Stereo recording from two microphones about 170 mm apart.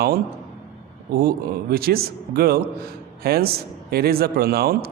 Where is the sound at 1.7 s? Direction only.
65° right (ahead or behind).